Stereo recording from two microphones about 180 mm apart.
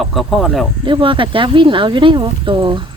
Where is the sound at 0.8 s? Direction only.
30° right (ahead or behind).